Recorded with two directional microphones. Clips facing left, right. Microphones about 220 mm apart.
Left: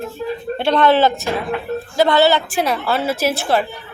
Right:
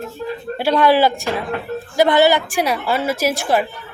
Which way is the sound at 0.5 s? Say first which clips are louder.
Even; 10° right (ahead or behind).